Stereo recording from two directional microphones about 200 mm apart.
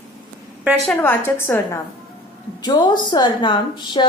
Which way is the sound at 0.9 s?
10° left (ahead or behind).